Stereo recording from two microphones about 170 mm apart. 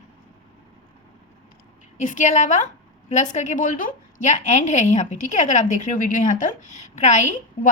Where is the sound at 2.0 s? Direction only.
45° left (ahead or behind).